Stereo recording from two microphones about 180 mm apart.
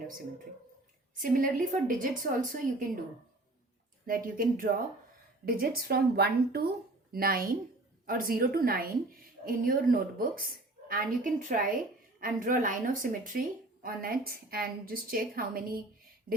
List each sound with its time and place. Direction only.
1.1 s a woman's voice: 50° right (ahead or behind)
4.0 s a woman's voice: 50° right (ahead or behind)